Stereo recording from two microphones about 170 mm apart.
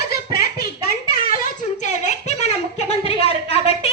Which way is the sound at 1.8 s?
45° left (ahead or behind).